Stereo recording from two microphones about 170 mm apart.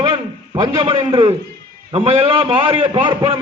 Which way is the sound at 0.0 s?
30° right (ahead or behind).